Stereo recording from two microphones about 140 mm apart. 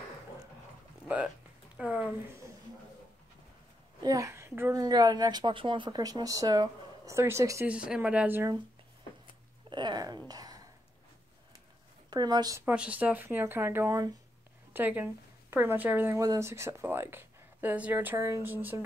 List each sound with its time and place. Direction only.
1.0 s speech: 10° right (ahead or behind)
4.0 s a child's voice: 25° right (ahead or behind)
4.8 s speech: 30° right (ahead or behind)
7.6 s speech: 10° right (ahead or behind)
9.7 s a sound: 30° right (ahead or behind)
12.1 s speech: 30° right (ahead or behind)
12.6 s speech: 10° right (ahead or behind)
14.7 s speech: 15° right (ahead or behind)